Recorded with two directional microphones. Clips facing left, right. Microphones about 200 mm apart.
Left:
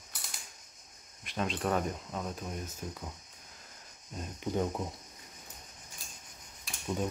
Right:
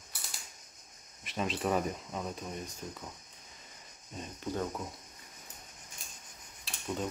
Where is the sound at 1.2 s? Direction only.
Centre (ahead or behind).